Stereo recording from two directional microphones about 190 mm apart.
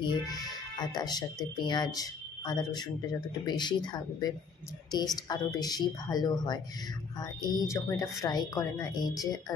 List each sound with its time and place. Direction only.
0.0 s speech: 20° left (ahead or behind)